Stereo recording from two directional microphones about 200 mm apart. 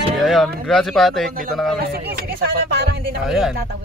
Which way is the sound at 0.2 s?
Centre (ahead or behind).